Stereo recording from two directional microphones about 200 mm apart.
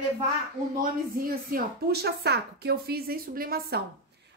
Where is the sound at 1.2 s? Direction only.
45° right (ahead or behind).